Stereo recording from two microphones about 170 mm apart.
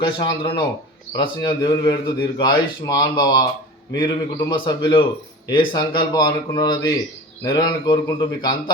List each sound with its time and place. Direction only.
0.0 s a man's voice: 25° left (ahead or behind)